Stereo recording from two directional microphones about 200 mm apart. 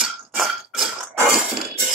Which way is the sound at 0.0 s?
Centre (ahead or behind).